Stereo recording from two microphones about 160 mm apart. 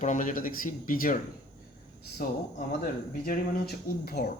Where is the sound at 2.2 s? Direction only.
70° left (ahead or behind).